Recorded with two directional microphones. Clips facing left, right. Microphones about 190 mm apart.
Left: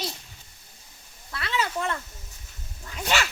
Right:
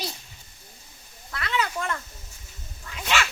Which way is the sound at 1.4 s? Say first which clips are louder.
Even; 25° left (ahead or behind).